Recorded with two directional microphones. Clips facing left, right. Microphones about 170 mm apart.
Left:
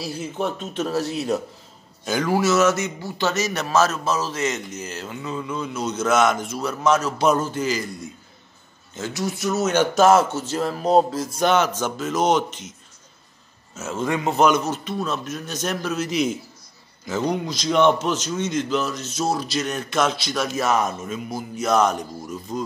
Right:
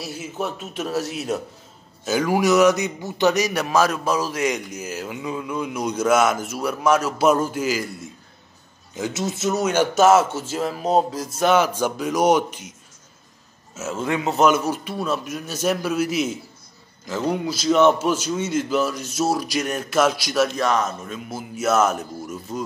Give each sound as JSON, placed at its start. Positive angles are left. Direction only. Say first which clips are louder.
{"t": 0.1, "sound": "a man's voice", "louder": "left 2 dB", "side_deg": -5}
{"t": 2.0, "sound": "a man's voice", "louder": "right 1 dB", "side_deg": -10}
{"t": 8.9, "sound": "speech", "louder": "right 1 dB", "side_deg": -20}
{"t": 9.6, "sound": "a man's voice", "louder": "even", "side_deg": -10}
{"t": 13.7, "sound": "a man's voice", "louder": "even", "side_deg": -5}
{"t": 20.4, "sound": "speech", "louder": "even", "side_deg": 5}